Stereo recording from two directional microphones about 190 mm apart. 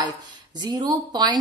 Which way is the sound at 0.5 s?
20° right (ahead or behind).